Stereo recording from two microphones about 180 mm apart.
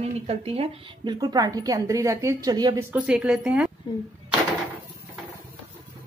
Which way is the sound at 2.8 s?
5° right (ahead or behind).